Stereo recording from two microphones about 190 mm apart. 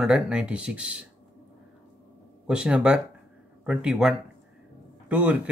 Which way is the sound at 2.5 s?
5° right (ahead or behind).